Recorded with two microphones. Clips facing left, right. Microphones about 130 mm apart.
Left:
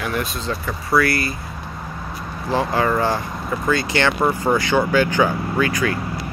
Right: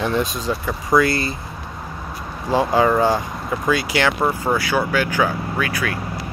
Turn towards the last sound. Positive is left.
turn(degrees=-5)  # may be behind; listen again after turning